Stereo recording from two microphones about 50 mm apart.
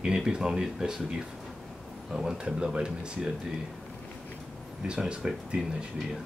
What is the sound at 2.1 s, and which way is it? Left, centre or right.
Speech, centre.